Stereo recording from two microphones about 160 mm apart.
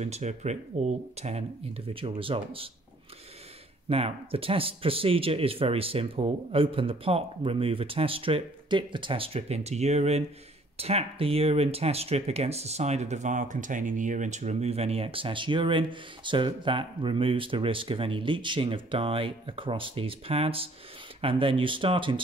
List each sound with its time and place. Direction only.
0.0 s speech: 45° right (ahead or behind)
3.9 s speech: 35° right (ahead or behind)